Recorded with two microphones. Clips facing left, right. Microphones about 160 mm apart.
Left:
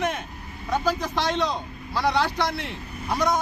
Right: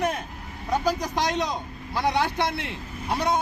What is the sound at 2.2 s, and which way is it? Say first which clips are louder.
Speech: even; 55° right (ahead or behind).